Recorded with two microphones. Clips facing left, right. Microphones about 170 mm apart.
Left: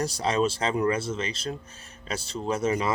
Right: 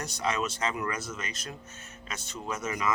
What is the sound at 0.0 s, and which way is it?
Speech, 30° left (ahead or behind).